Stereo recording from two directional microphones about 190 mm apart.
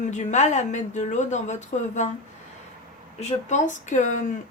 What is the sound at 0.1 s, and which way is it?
Speech, 40° left (ahead or behind).